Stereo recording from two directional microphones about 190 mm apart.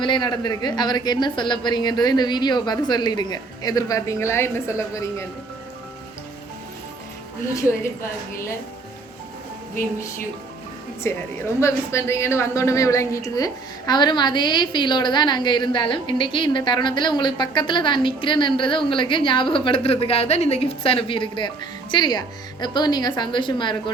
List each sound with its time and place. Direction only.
0.0 s a woman's voice: 25° left (ahead or behind)
7.5 s a woman's voice: 15° left (ahead or behind)
11.1 s a woman's voice: 15° left (ahead or behind)